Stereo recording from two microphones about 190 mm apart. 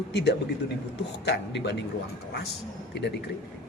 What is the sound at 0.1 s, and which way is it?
Speech, 60° left (ahead or behind).